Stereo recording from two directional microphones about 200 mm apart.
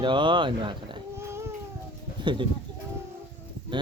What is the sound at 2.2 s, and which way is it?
Speech, 25° right (ahead or behind).